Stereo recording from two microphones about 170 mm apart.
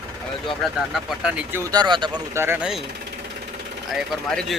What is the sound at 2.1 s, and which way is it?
Speech, 15° right (ahead or behind).